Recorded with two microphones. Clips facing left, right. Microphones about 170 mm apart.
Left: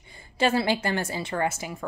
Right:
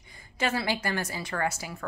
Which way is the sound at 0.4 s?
30° left (ahead or behind).